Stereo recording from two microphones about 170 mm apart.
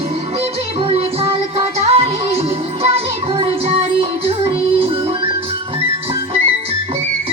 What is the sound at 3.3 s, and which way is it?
Music, 30° right (ahead or behind).